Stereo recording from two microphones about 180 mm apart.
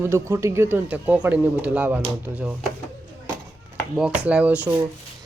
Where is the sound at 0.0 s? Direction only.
15° right (ahead or behind).